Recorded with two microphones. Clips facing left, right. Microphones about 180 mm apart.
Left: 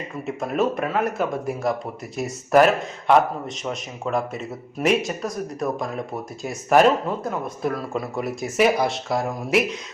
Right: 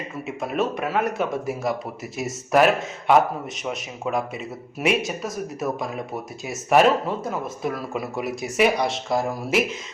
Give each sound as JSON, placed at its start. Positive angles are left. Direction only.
{"t": 0.3, "sound": "a man's voice", "side_deg": 0}